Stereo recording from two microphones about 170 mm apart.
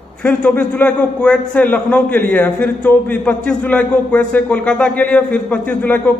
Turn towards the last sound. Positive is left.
turn(degrees=10)  # may be behind; listen again after turning